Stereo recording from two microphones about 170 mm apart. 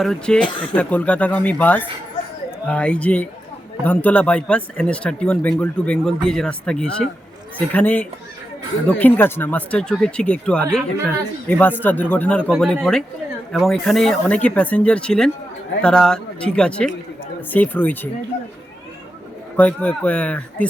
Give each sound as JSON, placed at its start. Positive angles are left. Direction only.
{"t": 0.0, "sound": "speech", "side_deg": 5}
{"t": 0.5, "sound": "speech", "side_deg": 30}
{"t": 0.8, "sound": "speech", "side_deg": 10}
{"t": 19.5, "sound": "speech", "side_deg": 10}